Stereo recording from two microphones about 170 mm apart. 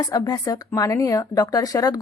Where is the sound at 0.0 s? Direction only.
20° left (ahead or behind).